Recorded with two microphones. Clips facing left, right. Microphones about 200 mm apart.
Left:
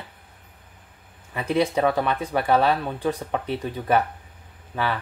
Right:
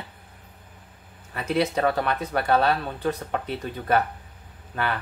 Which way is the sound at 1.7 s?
10° left (ahead or behind).